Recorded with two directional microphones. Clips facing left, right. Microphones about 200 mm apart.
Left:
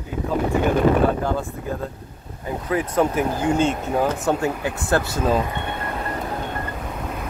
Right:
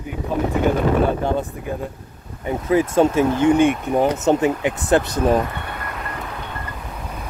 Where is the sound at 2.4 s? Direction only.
25° right (ahead or behind).